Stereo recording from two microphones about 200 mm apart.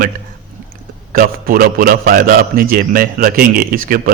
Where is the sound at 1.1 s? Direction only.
45° right (ahead or behind).